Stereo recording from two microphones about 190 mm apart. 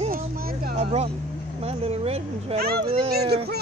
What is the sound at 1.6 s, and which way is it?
Speech, 30° right (ahead or behind).